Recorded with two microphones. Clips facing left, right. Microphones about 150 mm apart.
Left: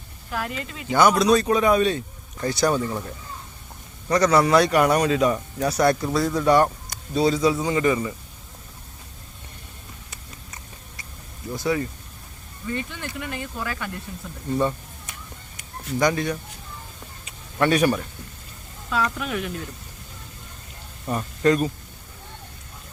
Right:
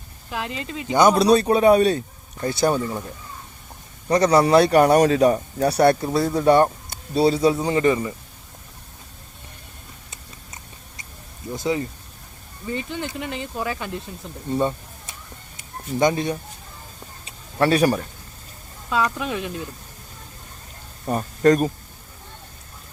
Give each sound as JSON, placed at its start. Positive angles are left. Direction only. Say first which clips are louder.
{"t": 0.3, "sound": "speech", "louder": "even", "side_deg": -20}
{"t": 4.1, "sound": "speech", "louder": "right 2 dB", "side_deg": -25}
{"t": 10.1, "sound": "clip-clop", "louder": "even", "side_deg": -20}
{"t": 11.5, "sound": "speech", "louder": "even", "side_deg": -20}
{"t": 17.2, "sound": "a sound", "louder": "right 2 dB", "side_deg": -35}
{"t": 19.2, "sound": "speech", "louder": "right 1 dB", "side_deg": -20}
{"t": 21.1, "sound": "speech", "louder": "right 3 dB", "side_deg": -40}